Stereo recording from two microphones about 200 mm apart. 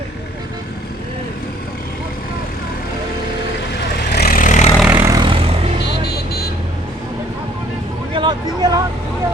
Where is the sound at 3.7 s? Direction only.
55° left (ahead or behind); by 4.7 s 40° left (ahead or behind).